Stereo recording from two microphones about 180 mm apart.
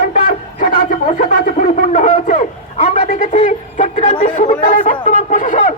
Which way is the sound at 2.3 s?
45° left (ahead or behind).